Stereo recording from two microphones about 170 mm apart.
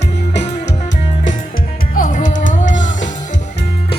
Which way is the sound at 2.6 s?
90° left.